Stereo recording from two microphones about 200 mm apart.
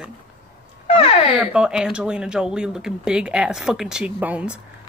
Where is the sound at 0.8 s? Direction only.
30° left (ahead or behind).